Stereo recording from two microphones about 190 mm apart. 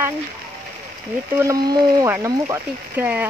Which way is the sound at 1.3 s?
15° right (ahead or behind).